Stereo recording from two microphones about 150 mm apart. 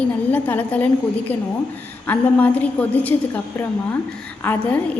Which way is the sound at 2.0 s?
10° left (ahead or behind).